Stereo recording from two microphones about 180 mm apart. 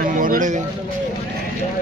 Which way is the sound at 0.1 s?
50° right (ahead or behind).